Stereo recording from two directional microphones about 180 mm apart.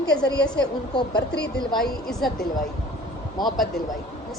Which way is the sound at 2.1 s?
Centre (ahead or behind).